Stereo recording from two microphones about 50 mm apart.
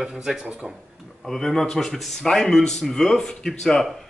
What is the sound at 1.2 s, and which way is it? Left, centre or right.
A man's voice, centre.